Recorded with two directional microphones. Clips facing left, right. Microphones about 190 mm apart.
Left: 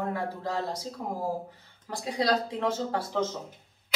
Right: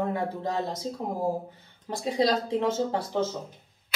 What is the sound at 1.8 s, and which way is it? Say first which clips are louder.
Speech: right 3 dB; 20° right (ahead or behind).